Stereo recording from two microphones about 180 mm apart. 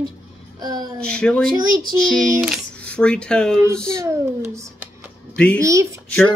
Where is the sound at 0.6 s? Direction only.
20° right (ahead or behind).